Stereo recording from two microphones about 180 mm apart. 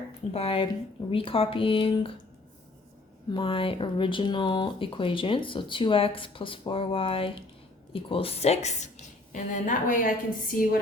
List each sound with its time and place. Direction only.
0.3 s a woman's voice: 30° left (ahead or behind)
3.3 s a woman's voice: 30° left (ahead or behind); by 10.8 s 55° left (ahead or behind)